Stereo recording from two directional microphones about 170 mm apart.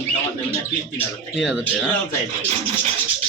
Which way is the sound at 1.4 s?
5° right (ahead or behind).